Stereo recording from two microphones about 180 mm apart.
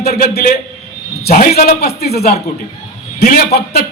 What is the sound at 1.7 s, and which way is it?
A man's voice, 60° left (ahead or behind).